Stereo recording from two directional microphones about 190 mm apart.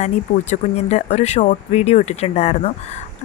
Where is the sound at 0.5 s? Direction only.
40° left (ahead or behind).